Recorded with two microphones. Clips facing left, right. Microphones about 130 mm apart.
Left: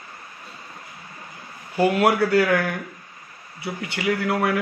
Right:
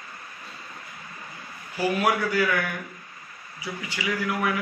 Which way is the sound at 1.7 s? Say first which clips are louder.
Left 5 dB; 65° left (ahead or behind).